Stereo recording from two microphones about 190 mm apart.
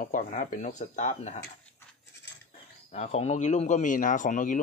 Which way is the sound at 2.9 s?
35° left (ahead or behind).